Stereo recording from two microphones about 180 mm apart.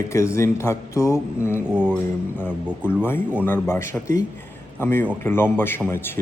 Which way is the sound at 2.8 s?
10° left (ahead or behind).